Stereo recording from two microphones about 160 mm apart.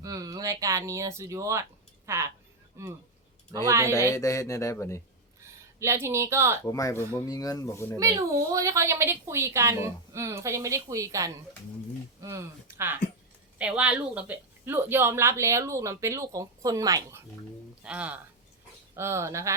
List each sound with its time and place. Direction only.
0.0 s a woman's voice: 20° right (ahead or behind)
4.1 s speech: 20° left (ahead or behind)
5.8 s a woman's voice: 15° right (ahead or behind)
6.7 s speech: 20° left (ahead or behind)
7.9 s a woman's voice: 20° right (ahead or behind)
17.8 s a woman's voice: 10° right (ahead or behind)